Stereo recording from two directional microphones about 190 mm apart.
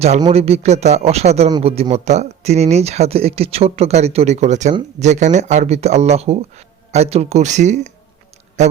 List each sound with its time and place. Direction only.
0.2 s speech: 35° right (ahead or behind)